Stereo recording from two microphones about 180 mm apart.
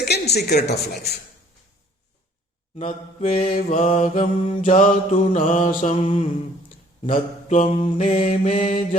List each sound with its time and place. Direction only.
0.3 s speech: 65° left (ahead or behind)
2.7 s mantra: 40° left (ahead or behind)